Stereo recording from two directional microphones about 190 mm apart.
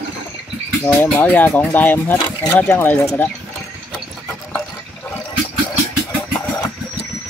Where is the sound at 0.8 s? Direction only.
10° left (ahead or behind).